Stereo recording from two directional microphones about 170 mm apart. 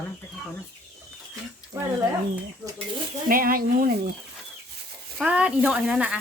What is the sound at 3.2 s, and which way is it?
Speech, 60° right (ahead or behind).